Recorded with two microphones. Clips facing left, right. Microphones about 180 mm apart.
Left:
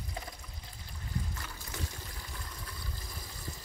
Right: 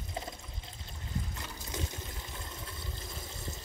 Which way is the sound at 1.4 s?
20° right (ahead or behind).